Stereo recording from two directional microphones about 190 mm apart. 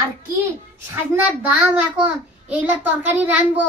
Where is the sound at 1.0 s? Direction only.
10° right (ahead or behind).